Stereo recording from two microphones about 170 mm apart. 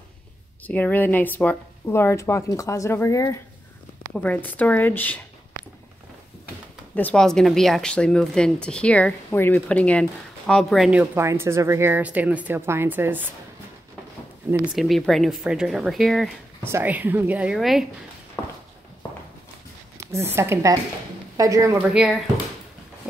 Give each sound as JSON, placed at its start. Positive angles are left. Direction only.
{"t": 0.7, "sound": "speech", "side_deg": 10}
{"t": 7.0, "sound": "speech", "side_deg": 5}
{"t": 14.8, "sound": "speech", "side_deg": 0}
{"t": 16.6, "sound": "a woman's voice", "side_deg": -15}
{"t": 20.0, "sound": "a sound", "side_deg": -15}
{"t": 20.3, "sound": "a woman's voice", "side_deg": -15}
{"t": 21.9, "sound": "speech", "side_deg": -5}